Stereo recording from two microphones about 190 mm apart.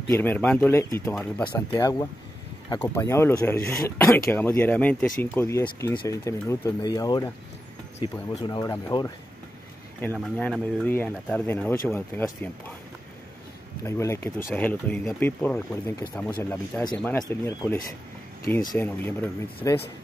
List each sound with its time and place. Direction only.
0.1 s speech: 10° left (ahead or behind)
1.7 s speech: 20° left (ahead or behind)
10.1 s speech: centre (ahead or behind)
13.8 s speech: 15° left (ahead or behind)
18.8 s speech: 10° left (ahead or behind)